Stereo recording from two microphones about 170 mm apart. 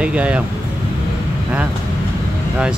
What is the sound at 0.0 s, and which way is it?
Speech, 5° right (ahead or behind).